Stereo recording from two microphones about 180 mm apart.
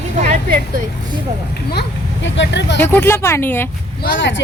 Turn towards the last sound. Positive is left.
turn(degrees=90)